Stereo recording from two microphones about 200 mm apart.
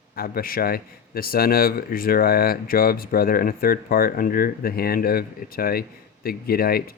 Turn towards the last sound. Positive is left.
turn(degrees=50)  # may be behind; listen again after turning